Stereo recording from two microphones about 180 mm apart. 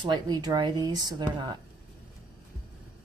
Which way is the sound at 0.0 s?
25° right (ahead or behind).